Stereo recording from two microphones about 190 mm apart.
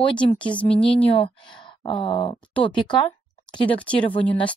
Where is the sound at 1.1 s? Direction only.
30° left (ahead or behind).